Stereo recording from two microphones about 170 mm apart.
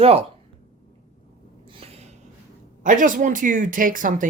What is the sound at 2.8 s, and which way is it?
Speech, 50° right (ahead or behind).